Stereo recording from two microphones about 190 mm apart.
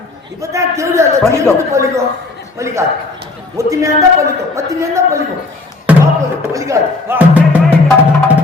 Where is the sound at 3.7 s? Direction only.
15° right (ahead or behind).